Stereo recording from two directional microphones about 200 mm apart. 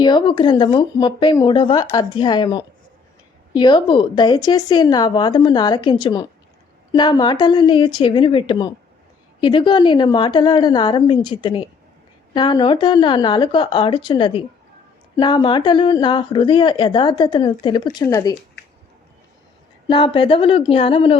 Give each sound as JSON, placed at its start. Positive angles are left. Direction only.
{"t": 0.0, "sound": "speech", "side_deg": 25}
{"t": 19.9, "sound": "speech", "side_deg": 25}